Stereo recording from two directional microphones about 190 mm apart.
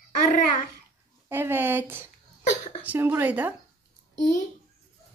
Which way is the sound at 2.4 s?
35° left (ahead or behind).